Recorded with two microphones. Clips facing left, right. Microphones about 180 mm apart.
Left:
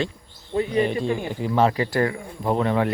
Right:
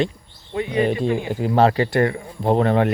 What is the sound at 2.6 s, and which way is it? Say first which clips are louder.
Speech: right 3 dB; 45° right (ahead or behind).